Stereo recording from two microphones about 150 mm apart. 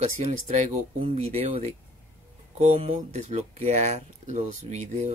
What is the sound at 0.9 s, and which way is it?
Speech, 40° right (ahead or behind).